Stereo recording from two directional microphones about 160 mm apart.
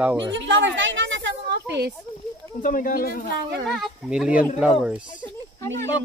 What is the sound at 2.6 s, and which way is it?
Speech, 60° left (ahead or behind).